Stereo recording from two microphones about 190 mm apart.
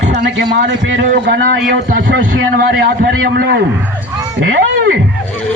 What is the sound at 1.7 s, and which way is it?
Speech, 45° right (ahead or behind).